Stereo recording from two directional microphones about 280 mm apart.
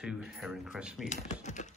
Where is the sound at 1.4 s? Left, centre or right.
Left.